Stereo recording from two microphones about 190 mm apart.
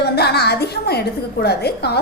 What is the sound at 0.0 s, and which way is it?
A woman's voice, 60° left (ahead or behind).